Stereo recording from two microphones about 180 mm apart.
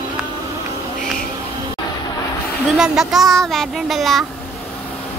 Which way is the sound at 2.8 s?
Centre (ahead or behind).